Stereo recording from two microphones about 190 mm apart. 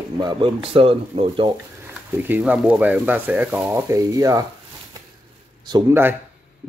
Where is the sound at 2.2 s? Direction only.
10° right (ahead or behind).